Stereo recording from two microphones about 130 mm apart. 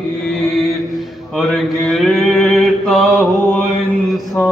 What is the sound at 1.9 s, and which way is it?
Mantra, centre (ahead or behind).